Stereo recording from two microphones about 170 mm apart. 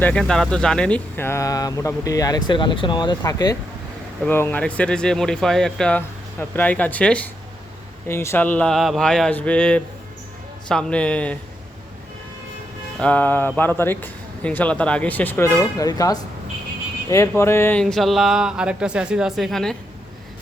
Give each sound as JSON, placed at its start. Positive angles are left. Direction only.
{"t": 0.0, "sound": "a man's voice", "side_deg": 5}
{"t": 13.0, "sound": "a man's voice", "side_deg": 10}